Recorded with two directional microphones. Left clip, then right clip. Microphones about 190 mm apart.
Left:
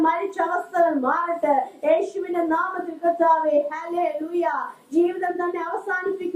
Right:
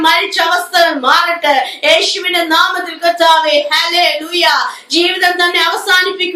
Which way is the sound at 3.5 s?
10° right (ahead or behind).